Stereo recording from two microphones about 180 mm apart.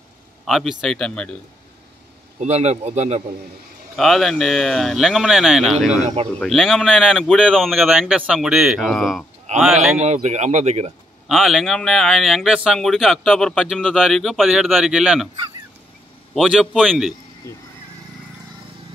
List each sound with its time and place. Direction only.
0.5 s speech: centre (ahead or behind)
2.4 s speech: 35° right (ahead or behind)
3.9 s speech: centre (ahead or behind)
9.9 s speech: 40° right (ahead or behind)
11.2 s speech: centre (ahead or behind)
16.3 s speech: centre (ahead or behind)